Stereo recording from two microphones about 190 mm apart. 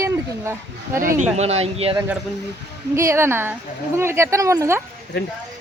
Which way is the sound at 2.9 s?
15° right (ahead or behind).